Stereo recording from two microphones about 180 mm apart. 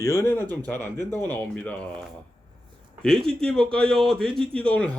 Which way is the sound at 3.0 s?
5° left (ahead or behind).